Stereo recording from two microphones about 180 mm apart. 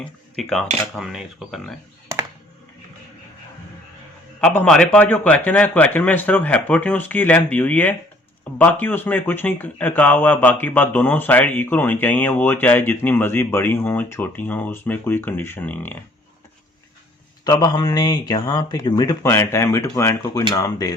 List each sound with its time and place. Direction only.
0.0 s speech: 5° left (ahead or behind)
4.4 s speech: 5° left (ahead or behind)
17.4 s a man's voice: 20° left (ahead or behind)